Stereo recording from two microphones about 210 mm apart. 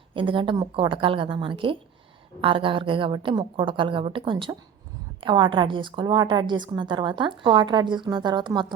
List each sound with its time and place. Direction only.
0.1 s a woman's voice: 25° right (ahead or behind)